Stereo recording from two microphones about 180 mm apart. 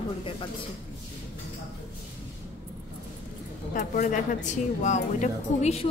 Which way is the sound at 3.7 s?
45° left (ahead or behind).